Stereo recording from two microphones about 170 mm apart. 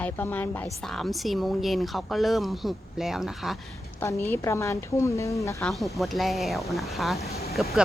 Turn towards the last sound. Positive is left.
turn(degrees=-5)  # may be behind; listen again after turning